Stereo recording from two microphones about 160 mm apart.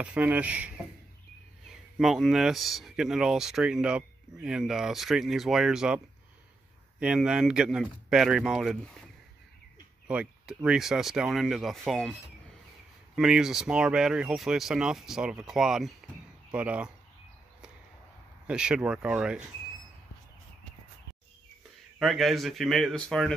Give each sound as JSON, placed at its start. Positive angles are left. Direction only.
{"t": 0.0, "sound": "speech", "side_deg": -10}
{"t": 2.0, "sound": "speech", "side_deg": 0}
{"t": 7.0, "sound": "speech", "side_deg": -5}
{"t": 10.0, "sound": "speech", "side_deg": -5}
{"t": 18.5, "sound": "speech", "side_deg": -5}
{"t": 21.9, "sound": "speech", "side_deg": 0}